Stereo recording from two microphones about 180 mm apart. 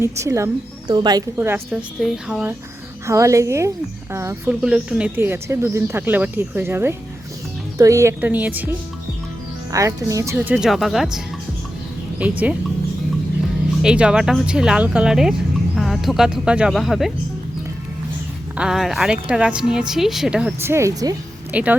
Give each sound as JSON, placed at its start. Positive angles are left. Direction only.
{"t": 0.0, "sound": "speech", "side_deg": -15}
{"t": 1.4, "sound": "speech", "side_deg": -10}
{"t": 9.7, "sound": "speech", "side_deg": -15}
{"t": 13.8, "sound": "speech", "side_deg": -5}
{"t": 18.5, "sound": "speech", "side_deg": -5}
{"t": 21.5, "sound": "speech", "side_deg": -5}